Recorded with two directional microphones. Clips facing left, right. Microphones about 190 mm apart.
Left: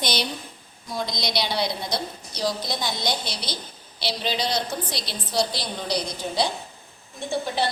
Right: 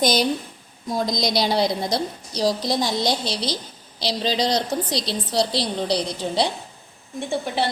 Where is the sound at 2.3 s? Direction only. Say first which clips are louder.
Right 6 dB; 35° right (ahead or behind).